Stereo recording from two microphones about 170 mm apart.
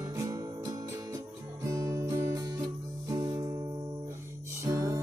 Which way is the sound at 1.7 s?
20° right (ahead or behind).